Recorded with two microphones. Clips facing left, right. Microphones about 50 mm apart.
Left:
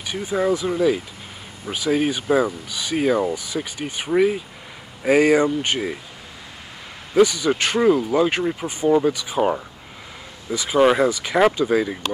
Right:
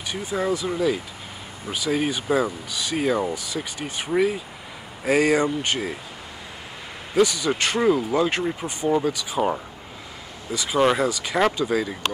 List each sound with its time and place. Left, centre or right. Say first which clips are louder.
0.1 s speech: left 4 dB; centre
7.2 s speech: left 4 dB; centre
7.8 s speech: left 3 dB; centre
8.2 s speech: left 3 dB; centre